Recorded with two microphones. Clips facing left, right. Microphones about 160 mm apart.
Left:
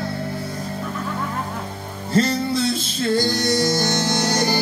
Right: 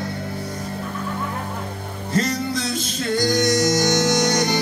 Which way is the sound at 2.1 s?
30° left (ahead or behind).